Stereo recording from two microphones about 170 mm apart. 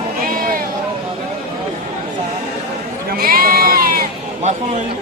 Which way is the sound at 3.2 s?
60° right (ahead or behind).